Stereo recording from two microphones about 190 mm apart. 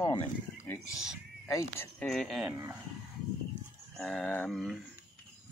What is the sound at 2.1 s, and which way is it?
Speech, centre (ahead or behind).